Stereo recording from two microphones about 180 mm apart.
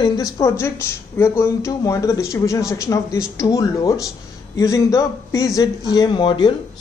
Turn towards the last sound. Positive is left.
turn(degrees=25)  # may be behind; listen again after turning